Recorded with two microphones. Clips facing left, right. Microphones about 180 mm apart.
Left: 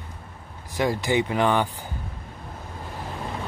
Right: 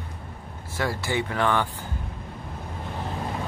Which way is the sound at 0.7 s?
15° left (ahead or behind).